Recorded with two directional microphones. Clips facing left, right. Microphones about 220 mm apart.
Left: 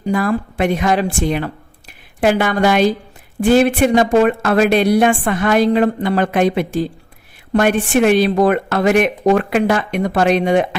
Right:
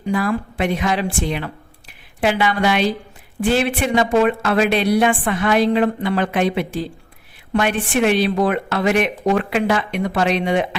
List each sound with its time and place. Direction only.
0.0 s a woman's voice: 45° left (ahead or behind)